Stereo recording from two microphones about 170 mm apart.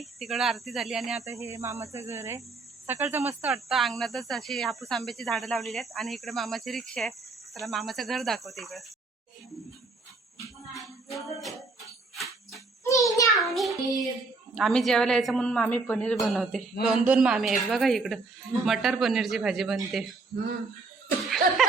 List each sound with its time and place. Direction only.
0.0 s speech: centre (ahead or behind)
1.2 s speech: 15° right (ahead or behind)
3.4 s speech: centre (ahead or behind)
10.8 s music: centre (ahead or behind)
12.1 s jingle bell: centre (ahead or behind)
12.8 s a sound: 20° left (ahead or behind)
13.2 s child singing: centre (ahead or behind)
14.5 s speech: centre (ahead or behind)
21.2 s speech: centre (ahead or behind)